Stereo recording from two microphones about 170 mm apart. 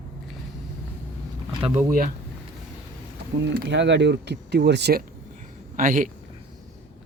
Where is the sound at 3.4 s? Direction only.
80° right.